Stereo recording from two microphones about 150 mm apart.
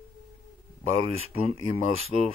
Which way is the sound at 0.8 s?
40° right (ahead or behind).